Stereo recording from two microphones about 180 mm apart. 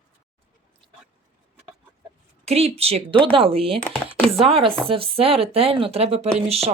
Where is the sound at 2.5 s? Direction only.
35° right (ahead or behind).